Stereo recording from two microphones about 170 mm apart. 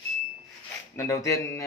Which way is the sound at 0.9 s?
15° left (ahead or behind).